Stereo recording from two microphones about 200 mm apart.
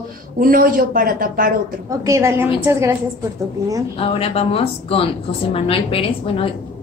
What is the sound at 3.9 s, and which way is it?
Speech, 30° left (ahead or behind).